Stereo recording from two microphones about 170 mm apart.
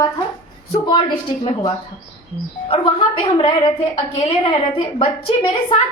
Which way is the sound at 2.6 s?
30° left (ahead or behind).